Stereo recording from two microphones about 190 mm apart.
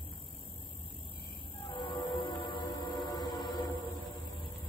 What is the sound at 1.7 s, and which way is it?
Music, 25° left (ahead or behind).